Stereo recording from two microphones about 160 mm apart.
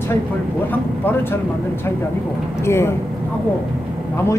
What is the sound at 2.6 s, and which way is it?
Speech, 15° left (ahead or behind).